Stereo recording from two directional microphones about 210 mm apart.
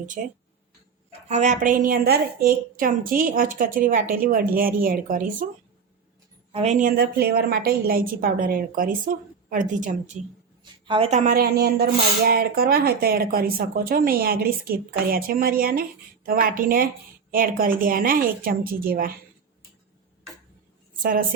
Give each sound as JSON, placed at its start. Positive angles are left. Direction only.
{"t": 0.2, "sound": "a woman's voice", "side_deg": -40}
{"t": 6.5, "sound": "a woman's voice", "side_deg": -30}
{"t": 10.6, "sound": "a woman's voice", "side_deg": -25}
{"t": 21.0, "sound": "a woman's voice", "side_deg": -40}